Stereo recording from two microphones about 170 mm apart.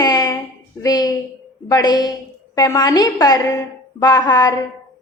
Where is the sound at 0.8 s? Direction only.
20° left (ahead or behind).